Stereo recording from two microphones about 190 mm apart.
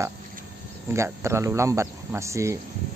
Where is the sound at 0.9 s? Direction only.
15° right (ahead or behind).